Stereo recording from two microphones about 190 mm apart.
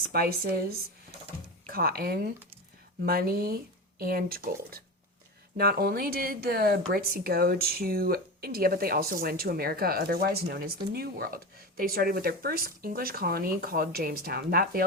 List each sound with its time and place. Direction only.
0.1 s speech: 55° right (ahead or behind)
1.6 s speech: 50° right (ahead or behind)